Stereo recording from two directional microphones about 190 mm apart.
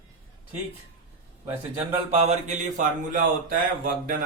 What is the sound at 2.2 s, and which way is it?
Speech, 35° right (ahead or behind).